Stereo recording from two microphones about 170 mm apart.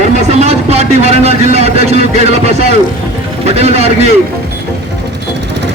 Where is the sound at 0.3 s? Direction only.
40° right (ahead or behind).